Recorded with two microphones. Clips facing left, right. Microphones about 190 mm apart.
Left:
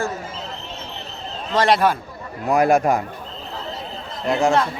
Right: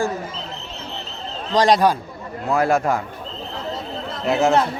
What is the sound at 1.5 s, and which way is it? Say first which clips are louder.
Speech: right 2 dB; 15° right (ahead or behind).